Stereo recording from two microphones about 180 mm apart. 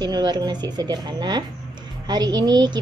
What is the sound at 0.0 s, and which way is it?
A woman's voice, 25° right (ahead or behind).